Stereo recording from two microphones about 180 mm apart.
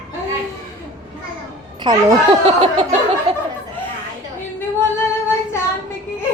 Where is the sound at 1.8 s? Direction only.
30° right (ahead or behind).